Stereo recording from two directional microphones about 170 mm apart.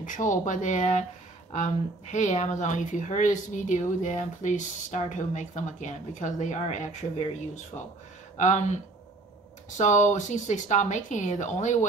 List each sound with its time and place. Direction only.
0.0 s speech: 50° left (ahead or behind)
2.1 s speech: 45° left (ahead or behind)
9.8 s speech: 45° left (ahead or behind)